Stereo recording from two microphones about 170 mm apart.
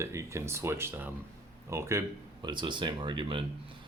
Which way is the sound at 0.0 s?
15° right (ahead or behind).